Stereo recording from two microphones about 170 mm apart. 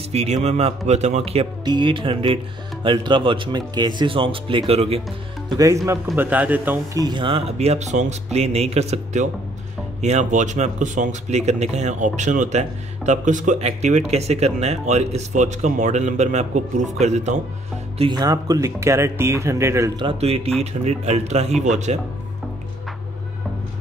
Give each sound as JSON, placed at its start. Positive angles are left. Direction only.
{"t": 0.1, "sound": "speech", "side_deg": -40}
{"t": 1.6, "sound": "speech", "side_deg": -25}
{"t": 6.1, "sound": "speech", "side_deg": -10}
{"t": 17.9, "sound": "speech", "side_deg": -25}
{"t": 20.0, "sound": "speech", "side_deg": -35}